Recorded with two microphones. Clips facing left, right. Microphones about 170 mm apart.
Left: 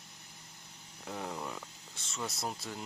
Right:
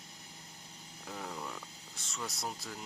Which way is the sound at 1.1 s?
10° left (ahead or behind).